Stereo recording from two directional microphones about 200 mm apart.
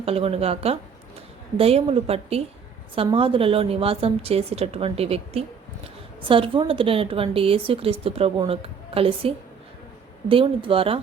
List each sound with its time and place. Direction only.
0.0 s a woman's voice: 30° right (ahead or behind)